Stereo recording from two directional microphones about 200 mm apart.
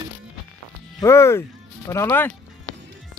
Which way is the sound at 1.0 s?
15° left (ahead or behind).